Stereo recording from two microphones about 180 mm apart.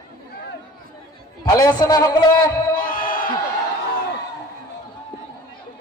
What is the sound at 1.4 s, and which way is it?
Speech, 20° left (ahead or behind).